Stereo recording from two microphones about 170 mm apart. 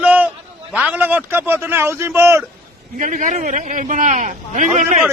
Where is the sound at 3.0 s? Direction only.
50° right (ahead or behind).